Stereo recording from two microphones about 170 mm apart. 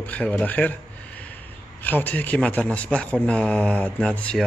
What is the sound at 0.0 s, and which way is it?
Speech, 10° left (ahead or behind).